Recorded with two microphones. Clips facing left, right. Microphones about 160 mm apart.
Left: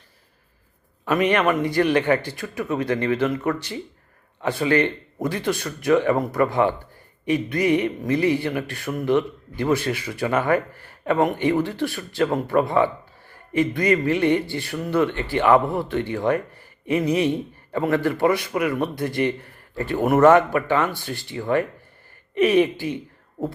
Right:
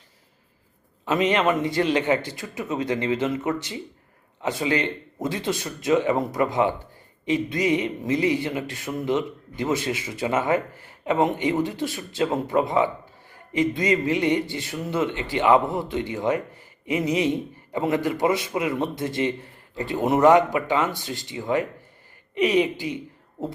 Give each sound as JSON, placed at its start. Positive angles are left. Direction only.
{"t": 1.0, "sound": "a man's voice", "side_deg": -20}